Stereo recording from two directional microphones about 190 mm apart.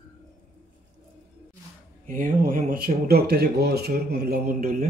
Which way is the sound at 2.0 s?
45° right (ahead or behind).